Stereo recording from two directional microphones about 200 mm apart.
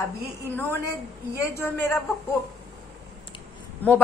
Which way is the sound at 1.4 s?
15° left (ahead or behind).